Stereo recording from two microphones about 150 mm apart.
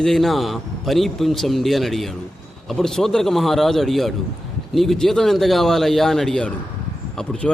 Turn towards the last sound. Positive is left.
turn(degrees=5)  # may be behind; listen again after turning